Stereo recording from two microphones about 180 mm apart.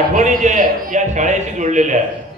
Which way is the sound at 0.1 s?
40° right (ahead or behind).